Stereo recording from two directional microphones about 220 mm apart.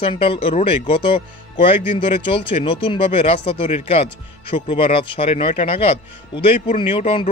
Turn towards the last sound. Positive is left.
turn(degrees=25)  # may be behind; listen again after turning